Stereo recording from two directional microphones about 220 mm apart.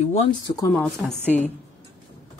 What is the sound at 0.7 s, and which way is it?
Speech, 5° left (ahead or behind).